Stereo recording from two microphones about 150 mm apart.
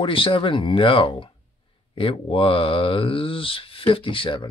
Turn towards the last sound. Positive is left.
turn(degrees=35)  # may be behind; listen again after turning